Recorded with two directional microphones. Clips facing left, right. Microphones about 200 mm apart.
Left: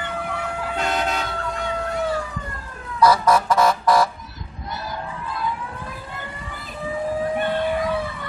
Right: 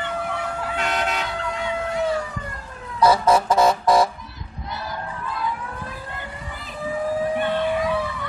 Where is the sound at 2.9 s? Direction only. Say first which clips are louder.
Even; 25° right (ahead or behind).